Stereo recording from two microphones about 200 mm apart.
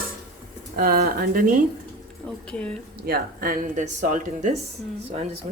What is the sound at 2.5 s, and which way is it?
Speech, 5° left (ahead or behind).